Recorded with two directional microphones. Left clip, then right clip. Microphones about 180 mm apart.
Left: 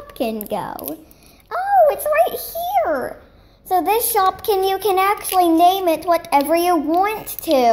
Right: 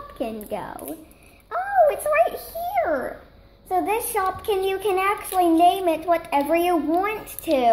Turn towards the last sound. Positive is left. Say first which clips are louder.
# left 4 dB
turn(degrees=35)  # may be behind; listen again after turning